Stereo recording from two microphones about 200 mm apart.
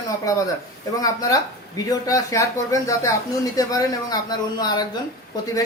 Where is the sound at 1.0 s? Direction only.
15° left (ahead or behind).